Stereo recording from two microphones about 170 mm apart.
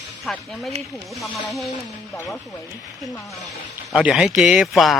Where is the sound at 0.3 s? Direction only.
Centre (ahead or behind).